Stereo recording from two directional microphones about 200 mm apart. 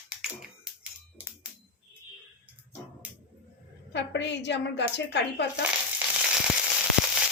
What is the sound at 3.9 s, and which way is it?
A woman's voice, 60° left (ahead or behind).